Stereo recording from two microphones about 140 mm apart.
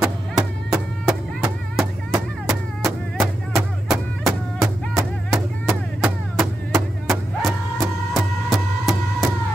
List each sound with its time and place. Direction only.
0.0 s music: 5° right (ahead or behind)